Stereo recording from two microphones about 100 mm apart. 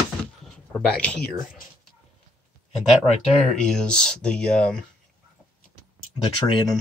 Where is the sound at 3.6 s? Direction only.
10° left (ahead or behind).